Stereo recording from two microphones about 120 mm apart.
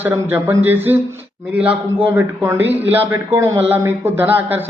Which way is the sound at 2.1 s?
20° right (ahead or behind).